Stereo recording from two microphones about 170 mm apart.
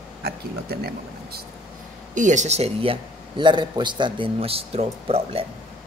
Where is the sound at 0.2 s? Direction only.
65° right (ahead or behind).